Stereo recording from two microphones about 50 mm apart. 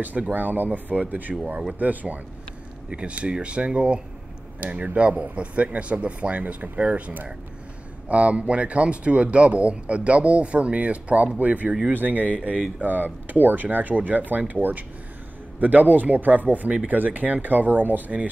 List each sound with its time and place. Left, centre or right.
0.0 s speech: right